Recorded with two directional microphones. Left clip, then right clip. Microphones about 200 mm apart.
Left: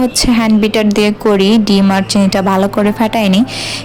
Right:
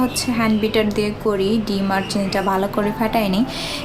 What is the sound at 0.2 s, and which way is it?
A woman's voice, 40° left (ahead or behind).